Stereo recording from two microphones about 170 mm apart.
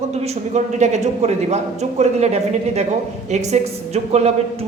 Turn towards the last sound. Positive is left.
turn(degrees=-40)  # may be behind; listen again after turning